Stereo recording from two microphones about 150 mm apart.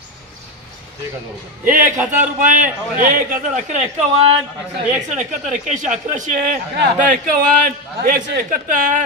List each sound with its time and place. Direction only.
1.6 s speech: 65° right (ahead or behind)
1.9 s a man's voice: 10° right (ahead or behind)
2.3 s speech: 60° right (ahead or behind); by 4.4 s 40° right (ahead or behind)
4.9 s speech: 55° right (ahead or behind)